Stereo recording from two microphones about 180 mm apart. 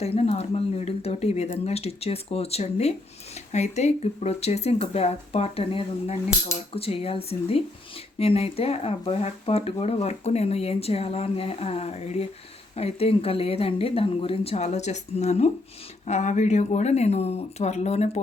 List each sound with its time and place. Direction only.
0.0 s speech: 35° left (ahead or behind)